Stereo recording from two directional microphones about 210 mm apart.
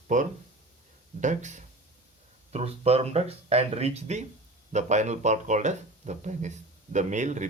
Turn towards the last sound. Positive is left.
turn(degrees=-35)  # may be behind; listen again after turning